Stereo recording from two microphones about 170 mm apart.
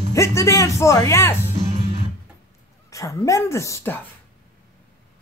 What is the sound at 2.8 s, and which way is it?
Speech, 20° left (ahead or behind).